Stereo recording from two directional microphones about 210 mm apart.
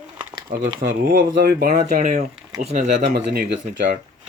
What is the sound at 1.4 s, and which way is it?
Speech, 50° right (ahead or behind).